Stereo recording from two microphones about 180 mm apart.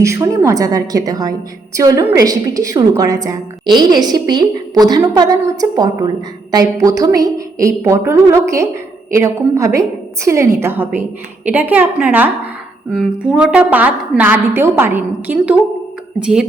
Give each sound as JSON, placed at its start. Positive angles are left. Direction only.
{"t": 0.0, "sound": "a woman's voice", "side_deg": -15}